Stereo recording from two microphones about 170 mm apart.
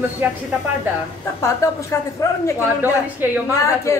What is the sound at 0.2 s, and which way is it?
Speech, 10° right (ahead or behind).